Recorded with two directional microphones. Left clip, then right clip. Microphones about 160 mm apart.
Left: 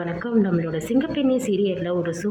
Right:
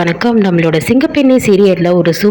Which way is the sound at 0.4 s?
40° right (ahead or behind).